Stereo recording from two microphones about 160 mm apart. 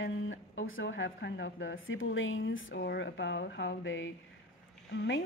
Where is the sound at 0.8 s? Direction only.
90° left.